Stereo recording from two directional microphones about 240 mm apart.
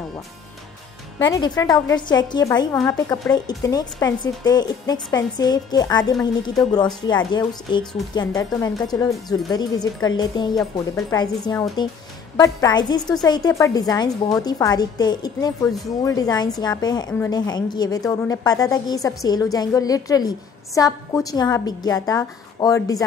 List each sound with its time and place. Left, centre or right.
1.2 s a woman's voice: centre
10.5 s a woman's voice: centre
11.1 s a woman's voice: centre